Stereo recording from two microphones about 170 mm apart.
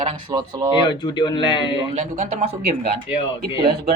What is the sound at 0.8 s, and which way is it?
Speech, 25° left (ahead or behind).